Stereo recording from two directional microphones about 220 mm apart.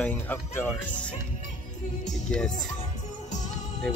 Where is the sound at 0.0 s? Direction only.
5° left (ahead or behind).